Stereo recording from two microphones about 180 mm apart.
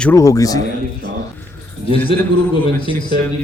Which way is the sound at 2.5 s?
30° left (ahead or behind).